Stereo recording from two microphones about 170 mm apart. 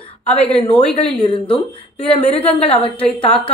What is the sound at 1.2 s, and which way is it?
Speech, 30° left (ahead or behind).